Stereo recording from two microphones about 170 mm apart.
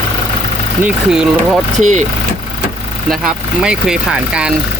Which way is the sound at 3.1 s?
5° right (ahead or behind).